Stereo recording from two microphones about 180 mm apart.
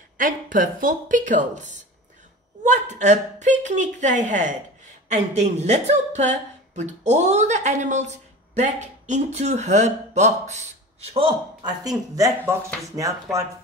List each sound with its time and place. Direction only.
0.2 s a woman's voice: 50° right (ahead or behind)
11.1 s speech: 25° right (ahead or behind)